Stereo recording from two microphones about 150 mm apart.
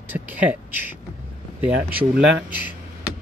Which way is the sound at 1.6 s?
10° right (ahead or behind).